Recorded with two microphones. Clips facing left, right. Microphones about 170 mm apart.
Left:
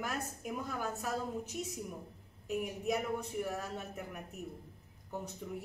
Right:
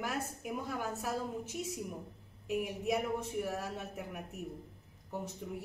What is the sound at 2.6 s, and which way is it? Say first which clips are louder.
A man's voice: even; centre (ahead or behind).